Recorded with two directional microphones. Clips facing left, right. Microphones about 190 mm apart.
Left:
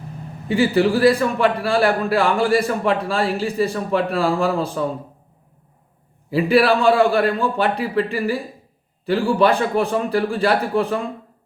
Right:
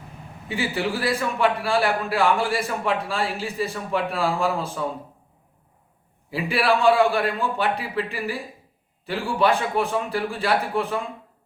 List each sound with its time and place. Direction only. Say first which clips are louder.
0.4 s a man's voice: left 9 dB; 35° left (ahead or behind)
6.3 s a man's voice: left 7 dB; 35° left (ahead or behind)